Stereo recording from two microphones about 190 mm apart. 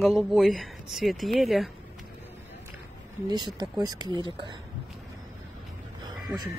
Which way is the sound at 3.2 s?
20° right (ahead or behind).